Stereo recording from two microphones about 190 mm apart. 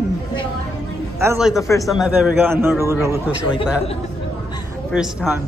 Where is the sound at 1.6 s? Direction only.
15° left (ahead or behind).